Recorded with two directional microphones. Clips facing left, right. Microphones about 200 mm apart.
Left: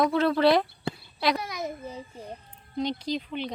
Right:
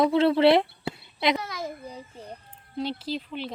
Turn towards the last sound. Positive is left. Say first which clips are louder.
# left 1 dB
turn(degrees=-5)  # may be behind; listen again after turning